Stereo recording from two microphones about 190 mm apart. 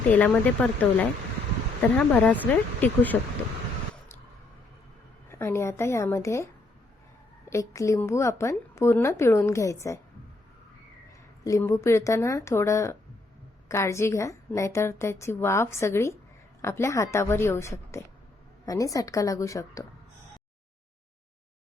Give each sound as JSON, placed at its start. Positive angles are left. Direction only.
{"t": 0.1, "sound": "a woman's voice", "side_deg": 10}
{"t": 5.3, "sound": "a woman's voice", "side_deg": 15}
{"t": 7.5, "sound": "a woman's voice", "side_deg": 15}
{"t": 11.4, "sound": "a woman's voice", "side_deg": 15}